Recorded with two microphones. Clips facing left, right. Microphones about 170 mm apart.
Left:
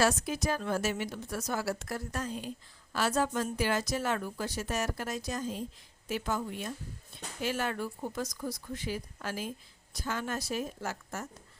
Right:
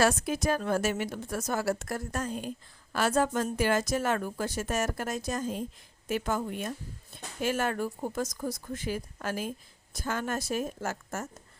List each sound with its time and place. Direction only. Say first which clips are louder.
0.0 s a woman's voice: right 3 dB; 55° right (ahead or behind)